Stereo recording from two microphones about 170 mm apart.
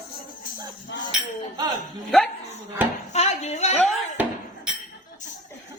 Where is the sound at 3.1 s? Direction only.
40° left (ahead or behind).